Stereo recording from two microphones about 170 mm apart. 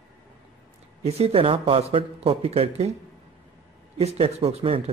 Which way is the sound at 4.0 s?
35° right (ahead or behind).